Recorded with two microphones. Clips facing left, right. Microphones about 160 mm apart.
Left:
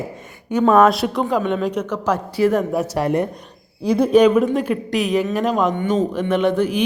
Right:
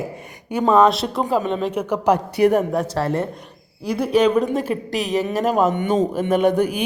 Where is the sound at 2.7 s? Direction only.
10° left (ahead or behind).